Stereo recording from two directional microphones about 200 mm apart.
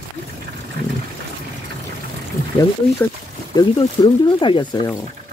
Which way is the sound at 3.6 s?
25° left (ahead or behind).